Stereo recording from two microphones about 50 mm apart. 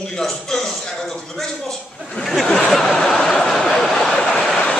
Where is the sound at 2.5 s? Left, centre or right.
Centre.